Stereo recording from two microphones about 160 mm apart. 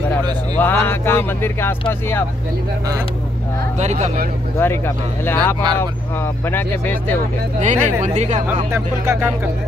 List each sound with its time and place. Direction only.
0.6 s speech: 15° left (ahead or behind)
3.7 s speech: 45° right (ahead or behind)
4.6 s speech: 15° left (ahead or behind)
7.6 s speech: 50° right (ahead or behind)
8.7 s speech: 15° right (ahead or behind)